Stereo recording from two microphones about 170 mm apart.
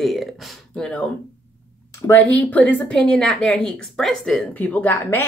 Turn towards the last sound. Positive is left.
turn(degrees=10)  # may be behind; listen again after turning